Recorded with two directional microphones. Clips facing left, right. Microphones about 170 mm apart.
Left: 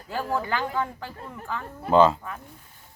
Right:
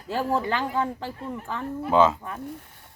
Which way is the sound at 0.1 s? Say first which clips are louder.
Right 2 dB; 25° right (ahead or behind).